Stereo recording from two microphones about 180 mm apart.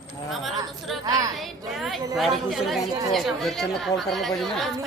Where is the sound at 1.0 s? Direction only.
20° right (ahead or behind).